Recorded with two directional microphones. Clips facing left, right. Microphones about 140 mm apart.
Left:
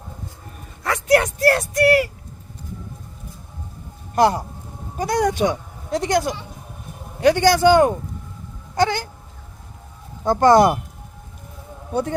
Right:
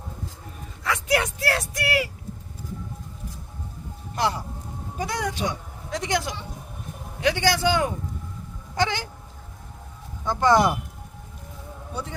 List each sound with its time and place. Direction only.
0.9 s speech: 45° left (ahead or behind)
4.1 s speech: 45° left (ahead or behind)
8.7 s a sound: 40° left (ahead or behind)
10.2 s speech: 40° left (ahead or behind)